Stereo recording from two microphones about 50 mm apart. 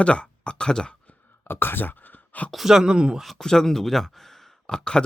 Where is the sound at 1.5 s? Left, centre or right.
Left.